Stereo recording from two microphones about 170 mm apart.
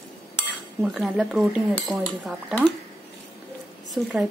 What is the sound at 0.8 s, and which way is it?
Speech, centre (ahead or behind).